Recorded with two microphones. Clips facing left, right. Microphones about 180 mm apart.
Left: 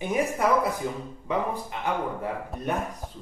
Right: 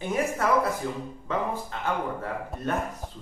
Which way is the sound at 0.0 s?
15° left (ahead or behind).